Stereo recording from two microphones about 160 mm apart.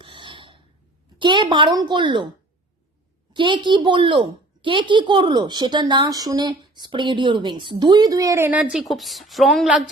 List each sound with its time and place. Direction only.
0.0 s filing: 30° right (ahead or behind)
1.2 s a woman's voice: 30° right (ahead or behind)
3.3 s a woman's voice: 30° right (ahead or behind); by 9.9 s 5° right (ahead or behind)